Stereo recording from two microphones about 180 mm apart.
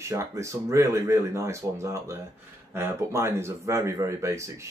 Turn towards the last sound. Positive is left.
turn(degrees=-15)  # may be behind; listen again after turning